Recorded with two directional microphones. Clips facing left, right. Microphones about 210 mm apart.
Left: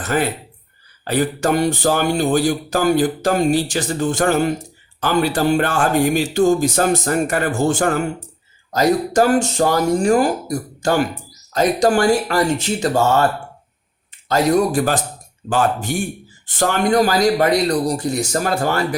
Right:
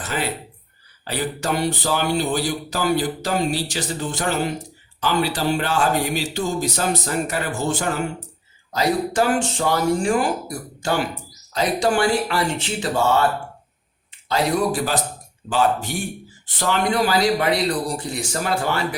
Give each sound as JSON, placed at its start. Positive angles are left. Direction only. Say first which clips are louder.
{"t": 0.0, "sound": "speech", "louder": "left 6 dB", "side_deg": 50}
{"t": 14.3, "sound": "speech", "louder": "left 5 dB", "side_deg": 45}